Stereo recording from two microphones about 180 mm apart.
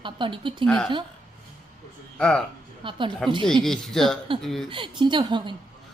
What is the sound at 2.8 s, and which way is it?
Speech, 25° right (ahead or behind).